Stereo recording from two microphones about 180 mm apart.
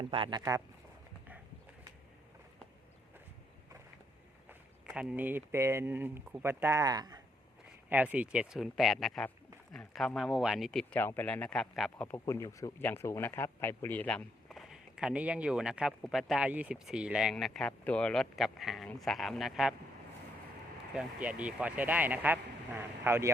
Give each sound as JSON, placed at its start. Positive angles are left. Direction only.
{"t": 0.0, "sound": "speech", "side_deg": -30}
{"t": 4.4, "sound": "speech", "side_deg": -5}
{"t": 7.9, "sound": "speech", "side_deg": -10}
{"t": 20.9, "sound": "speech", "side_deg": -5}